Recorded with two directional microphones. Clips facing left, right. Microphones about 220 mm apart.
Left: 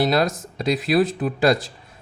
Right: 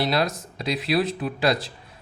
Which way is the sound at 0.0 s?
45° left (ahead or behind).